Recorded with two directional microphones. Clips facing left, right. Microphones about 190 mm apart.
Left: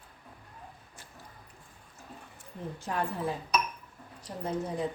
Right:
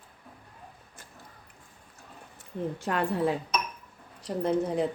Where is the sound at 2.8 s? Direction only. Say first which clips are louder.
Right 5 dB; 70° right (ahead or behind).